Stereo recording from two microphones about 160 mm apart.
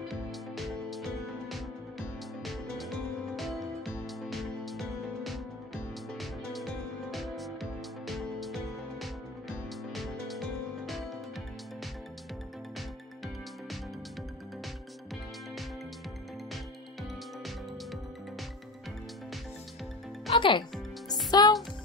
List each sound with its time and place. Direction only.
0.1 s music: centre (ahead or behind)
20.2 s speech: 30° left (ahead or behind)
21.3 s music: 25° left (ahead or behind)